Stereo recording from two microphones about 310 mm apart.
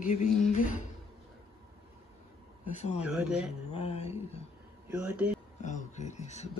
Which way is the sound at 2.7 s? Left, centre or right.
Left.